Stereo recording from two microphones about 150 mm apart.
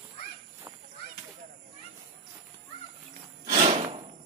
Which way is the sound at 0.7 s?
20° right (ahead or behind).